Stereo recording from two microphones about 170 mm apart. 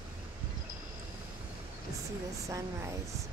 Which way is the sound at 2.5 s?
20° right (ahead or behind).